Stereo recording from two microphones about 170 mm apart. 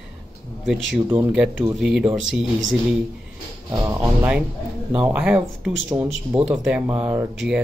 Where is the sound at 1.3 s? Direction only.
5° right (ahead or behind).